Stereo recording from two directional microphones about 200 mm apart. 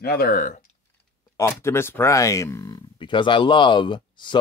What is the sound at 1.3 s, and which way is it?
Speech, 15° left (ahead or behind).